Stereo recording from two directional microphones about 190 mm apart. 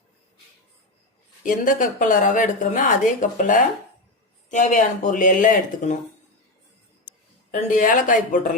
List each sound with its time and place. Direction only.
1.5 s a woman's voice: 45° left (ahead or behind)
7.5 s a woman's voice: 45° left (ahead or behind)